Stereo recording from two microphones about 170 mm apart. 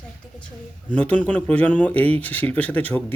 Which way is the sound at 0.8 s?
10° left (ahead or behind).